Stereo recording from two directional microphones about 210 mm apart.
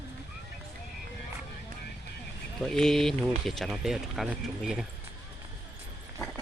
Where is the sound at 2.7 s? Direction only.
Centre (ahead or behind).